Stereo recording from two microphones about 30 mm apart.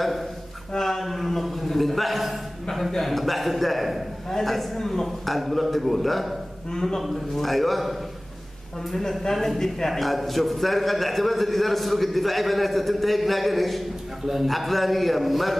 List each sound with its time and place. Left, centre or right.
0.7 s a man's voice: centre
6.7 s a man's voice: centre
7.0 s a man's voice: centre
9.6 s a man's voice: centre